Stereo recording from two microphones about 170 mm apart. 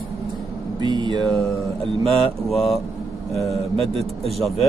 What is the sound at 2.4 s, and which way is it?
Speech, centre (ahead or behind).